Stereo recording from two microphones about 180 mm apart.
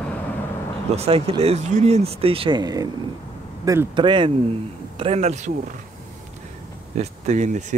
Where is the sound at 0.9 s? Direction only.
35° right (ahead or behind).